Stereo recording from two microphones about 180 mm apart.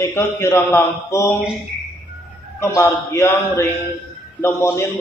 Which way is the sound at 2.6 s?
15° left (ahead or behind).